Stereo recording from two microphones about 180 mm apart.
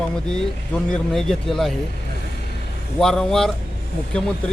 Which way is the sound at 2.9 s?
5° left (ahead or behind).